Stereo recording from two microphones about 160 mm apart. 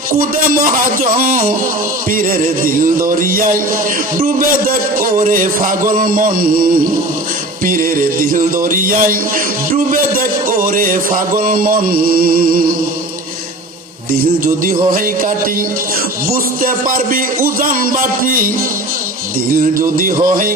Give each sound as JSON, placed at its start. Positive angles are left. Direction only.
{"t": 0.2, "sound": "music", "side_deg": -60}
{"t": 4.9, "sound": "music", "side_deg": -60}
{"t": 14.1, "sound": "music", "side_deg": -60}
{"t": 16.3, "sound": "music", "side_deg": -60}